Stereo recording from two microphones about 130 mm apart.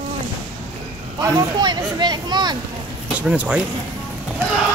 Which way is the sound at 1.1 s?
30° right (ahead or behind).